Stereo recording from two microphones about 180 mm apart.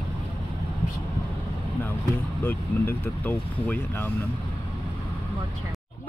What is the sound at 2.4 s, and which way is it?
Speech, 10° left (ahead or behind).